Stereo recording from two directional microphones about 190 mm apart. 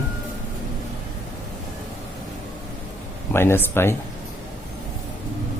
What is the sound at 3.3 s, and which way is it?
Speech, 10° left (ahead or behind).